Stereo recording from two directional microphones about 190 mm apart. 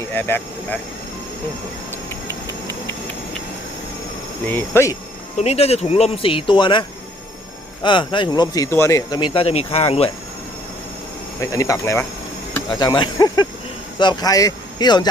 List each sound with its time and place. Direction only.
0.1 s speech: 10° left (ahead or behind)
4.4 s speech: 10° left (ahead or behind)
5.4 s speech: 35° left (ahead or behind)
11.3 s speech: 15° left (ahead or behind)